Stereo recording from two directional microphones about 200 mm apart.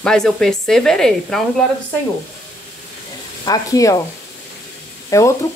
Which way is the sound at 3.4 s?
20° left (ahead or behind).